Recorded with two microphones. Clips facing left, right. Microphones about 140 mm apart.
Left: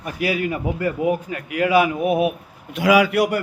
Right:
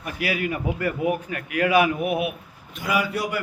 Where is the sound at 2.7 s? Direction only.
85° left.